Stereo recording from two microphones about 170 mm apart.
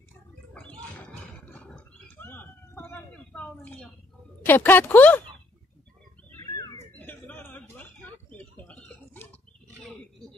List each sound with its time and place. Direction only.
0.6 s a sound: 10° left (ahead or behind)
4.4 s speech: 10° left (ahead or behind)
6.4 s bird: 20° left (ahead or behind)
7.0 s bird: 10° left (ahead or behind)